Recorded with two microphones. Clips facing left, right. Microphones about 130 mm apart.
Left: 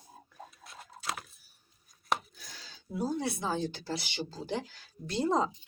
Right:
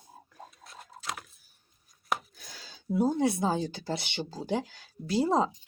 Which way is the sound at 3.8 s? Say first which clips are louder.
Right 3 dB; 55° right (ahead or behind).